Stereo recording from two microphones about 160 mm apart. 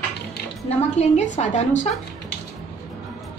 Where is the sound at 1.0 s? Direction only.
40° left (ahead or behind).